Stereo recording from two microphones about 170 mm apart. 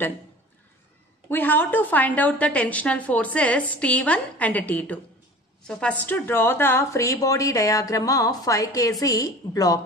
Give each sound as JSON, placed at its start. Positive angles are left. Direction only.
{"t": 1.3, "sound": "a woman's voice", "side_deg": 10}